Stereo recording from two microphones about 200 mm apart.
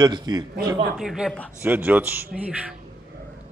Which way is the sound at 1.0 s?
Centre (ahead or behind).